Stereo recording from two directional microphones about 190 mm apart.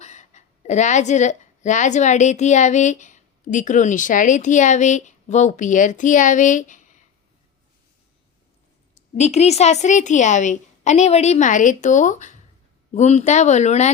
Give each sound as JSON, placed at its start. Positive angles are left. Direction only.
{"t": 0.0, "sound": "a woman's voice", "side_deg": 35}
{"t": 9.1, "sound": "a woman's voice", "side_deg": 35}